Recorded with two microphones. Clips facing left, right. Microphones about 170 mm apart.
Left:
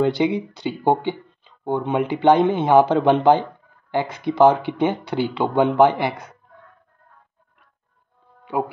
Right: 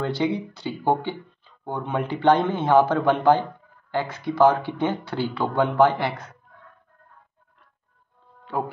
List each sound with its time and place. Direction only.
0.0 s speech: 15° left (ahead or behind)
8.5 s speech: 15° left (ahead or behind)